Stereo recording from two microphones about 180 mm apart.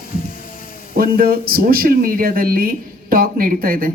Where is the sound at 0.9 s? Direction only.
55° right (ahead or behind).